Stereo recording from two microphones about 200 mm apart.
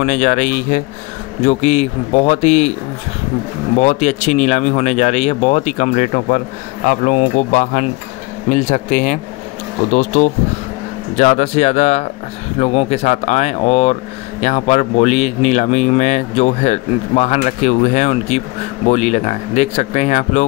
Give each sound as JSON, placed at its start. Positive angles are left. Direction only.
{"t": 0.0, "sound": "speech", "side_deg": 40}
{"t": 3.7, "sound": "speech", "side_deg": 35}